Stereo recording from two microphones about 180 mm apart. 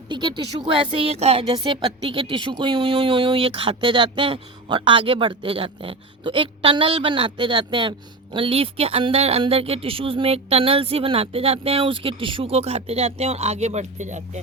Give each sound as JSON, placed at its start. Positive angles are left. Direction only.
{"t": 0.1, "sound": "speech", "side_deg": -25}